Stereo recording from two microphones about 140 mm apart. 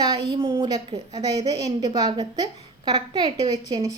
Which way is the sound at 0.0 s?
30° right (ahead or behind).